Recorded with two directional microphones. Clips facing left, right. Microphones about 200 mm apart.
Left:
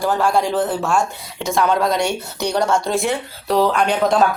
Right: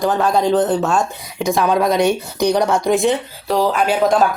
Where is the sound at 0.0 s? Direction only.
20° right (ahead or behind).